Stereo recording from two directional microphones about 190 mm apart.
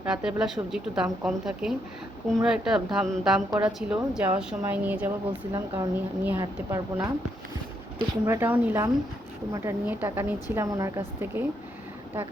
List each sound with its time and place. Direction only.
0.0 s a woman's voice: 5° right (ahead or behind)
8.2 s a woman's voice: 15° right (ahead or behind)